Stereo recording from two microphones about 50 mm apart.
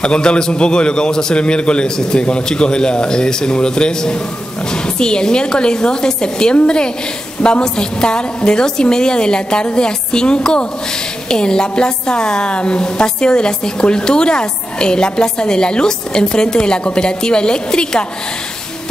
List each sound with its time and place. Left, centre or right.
0.0 s a woman's voice: centre